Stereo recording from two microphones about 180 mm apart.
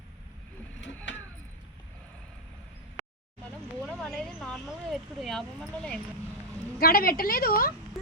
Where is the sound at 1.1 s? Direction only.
90° left.